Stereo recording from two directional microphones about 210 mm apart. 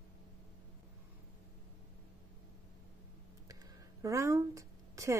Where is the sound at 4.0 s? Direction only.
15° right (ahead or behind).